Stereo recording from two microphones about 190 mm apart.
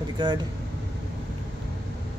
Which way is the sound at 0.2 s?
25° right (ahead or behind).